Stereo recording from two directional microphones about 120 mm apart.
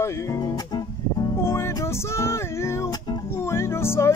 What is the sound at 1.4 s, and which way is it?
Music, 20° left (ahead or behind).